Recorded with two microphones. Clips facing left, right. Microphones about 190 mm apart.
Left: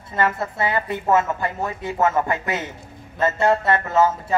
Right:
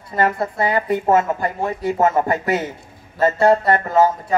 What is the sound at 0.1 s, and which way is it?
Speech, 35° right (ahead or behind).